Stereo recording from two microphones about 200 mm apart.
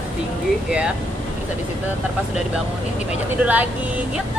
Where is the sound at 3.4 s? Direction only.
10° right (ahead or behind).